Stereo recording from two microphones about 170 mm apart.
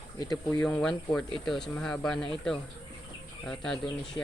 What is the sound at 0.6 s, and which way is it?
Speech, 5° left (ahead or behind).